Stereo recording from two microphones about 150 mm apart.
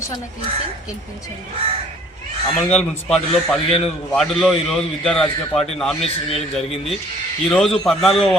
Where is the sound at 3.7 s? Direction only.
40° left (ahead or behind).